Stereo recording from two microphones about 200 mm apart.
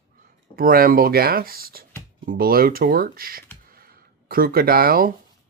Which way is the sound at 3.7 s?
50° right (ahead or behind).